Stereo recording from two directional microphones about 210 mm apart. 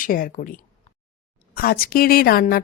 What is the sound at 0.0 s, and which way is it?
A woman's voice, 40° left (ahead or behind).